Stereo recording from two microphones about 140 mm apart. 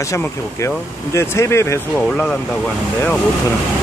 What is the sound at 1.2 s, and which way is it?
Speech, 20° left (ahead or behind).